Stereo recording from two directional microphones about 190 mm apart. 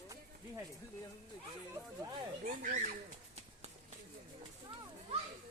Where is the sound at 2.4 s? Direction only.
40° right (ahead or behind).